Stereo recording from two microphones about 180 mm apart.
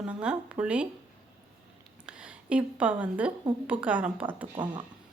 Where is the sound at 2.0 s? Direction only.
5° right (ahead or behind).